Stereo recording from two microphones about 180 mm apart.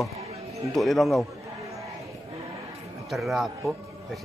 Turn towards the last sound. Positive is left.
turn(degrees=0)  # may be behind; listen again after turning